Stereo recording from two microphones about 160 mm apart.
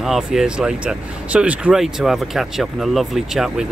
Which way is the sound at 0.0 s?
Centre (ahead or behind).